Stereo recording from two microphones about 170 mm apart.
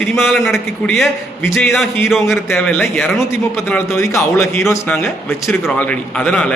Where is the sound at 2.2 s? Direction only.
15° left (ahead or behind).